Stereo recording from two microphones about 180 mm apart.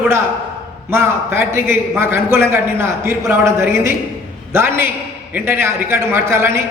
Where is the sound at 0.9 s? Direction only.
15° right (ahead or behind).